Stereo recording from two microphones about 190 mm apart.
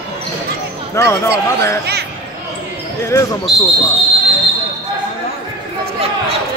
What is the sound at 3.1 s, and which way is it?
Speech, 15° left (ahead or behind).